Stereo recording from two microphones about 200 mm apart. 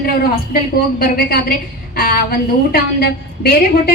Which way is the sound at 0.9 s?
50° left (ahead or behind).